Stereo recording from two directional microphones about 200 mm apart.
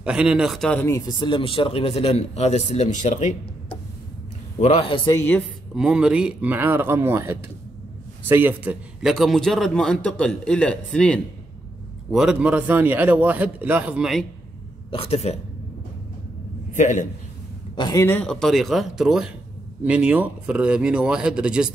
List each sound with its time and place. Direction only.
0.0 s speech: 5° right (ahead or behind); by 3.3 s 35° left (ahead or behind)
4.6 s speech: 30° left (ahead or behind)
5.8 s a man's voice: 5° right (ahead or behind)
14.9 s a woman's voice: 30° left (ahead or behind)
16.7 s a woman's voice: 40° left (ahead or behind)
17.7 s speech: 20° left (ahead or behind)
18.0 s a man's voice: 5° left (ahead or behind)